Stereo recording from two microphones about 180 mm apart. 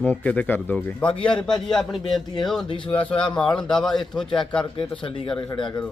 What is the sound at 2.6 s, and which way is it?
Speech, 25° left (ahead or behind).